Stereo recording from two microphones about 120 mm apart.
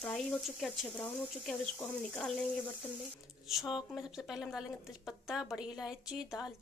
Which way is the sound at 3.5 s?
Centre (ahead or behind).